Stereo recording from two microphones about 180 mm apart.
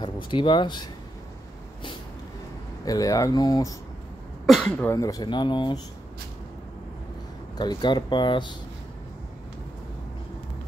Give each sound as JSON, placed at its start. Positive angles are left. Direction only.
{"t": 0.0, "sound": "speech", "side_deg": 25}
{"t": 2.8, "sound": "speech", "side_deg": 20}
{"t": 4.5, "sound": "speech", "side_deg": 5}
{"t": 4.9, "sound": "speech", "side_deg": 20}
{"t": 7.5, "sound": "speech", "side_deg": 25}